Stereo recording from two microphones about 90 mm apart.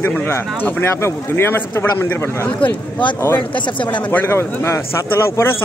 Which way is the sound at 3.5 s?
65° left (ahead or behind).